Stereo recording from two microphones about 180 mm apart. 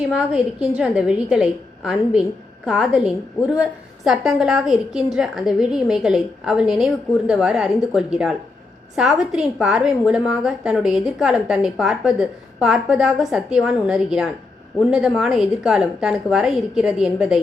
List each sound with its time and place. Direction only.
0.1 s a woman's voice: 5° right (ahead or behind)